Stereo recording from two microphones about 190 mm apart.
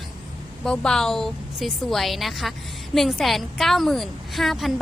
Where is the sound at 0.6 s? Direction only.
5° left (ahead or behind).